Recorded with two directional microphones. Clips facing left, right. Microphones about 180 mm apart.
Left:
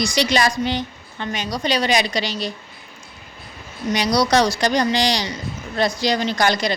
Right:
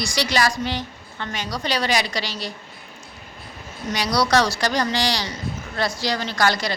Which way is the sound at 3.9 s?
20° left (ahead or behind).